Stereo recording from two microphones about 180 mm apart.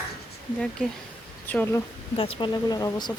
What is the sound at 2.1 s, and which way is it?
Speech, 30° left (ahead or behind).